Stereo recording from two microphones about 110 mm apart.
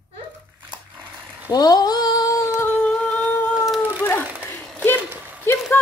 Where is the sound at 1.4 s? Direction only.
35° left (ahead or behind).